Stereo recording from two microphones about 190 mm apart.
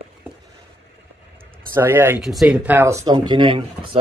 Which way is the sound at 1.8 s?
10° right (ahead or behind).